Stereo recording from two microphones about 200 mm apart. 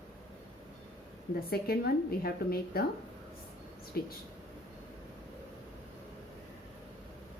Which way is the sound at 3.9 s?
50° left (ahead or behind).